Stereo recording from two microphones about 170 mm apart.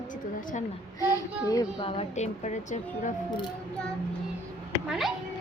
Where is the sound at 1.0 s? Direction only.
20° left (ahead or behind).